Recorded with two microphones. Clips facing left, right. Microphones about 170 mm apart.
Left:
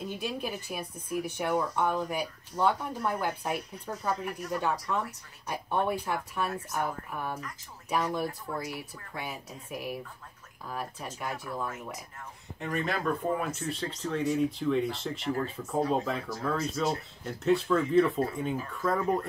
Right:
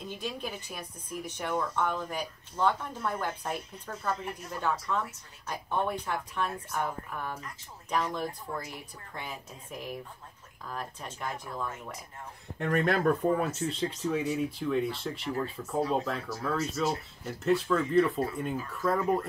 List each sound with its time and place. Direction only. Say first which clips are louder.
0.2 s speech: left 2 dB; 10° left (ahead or behind)
12.5 s speech: right 5 dB; 60° right (ahead or behind)
13.6 s speech: right 3 dB; 25° right (ahead or behind)
13.8 s speech: left 1 dB; 5° right (ahead or behind)